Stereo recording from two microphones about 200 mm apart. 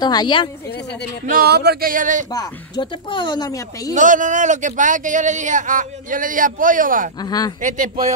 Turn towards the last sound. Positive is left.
turn(degrees=-40)  # may be behind; listen again after turning